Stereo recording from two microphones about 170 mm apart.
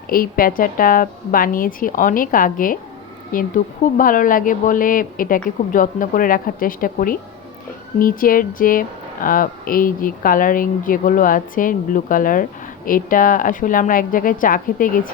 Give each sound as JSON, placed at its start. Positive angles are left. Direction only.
{"t": 0.1, "sound": "a woman's voice", "side_deg": 55}